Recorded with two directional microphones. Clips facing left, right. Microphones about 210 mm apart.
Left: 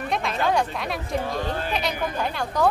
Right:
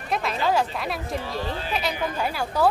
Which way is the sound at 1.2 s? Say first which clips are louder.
Left 3 dB; 50° left (ahead or behind).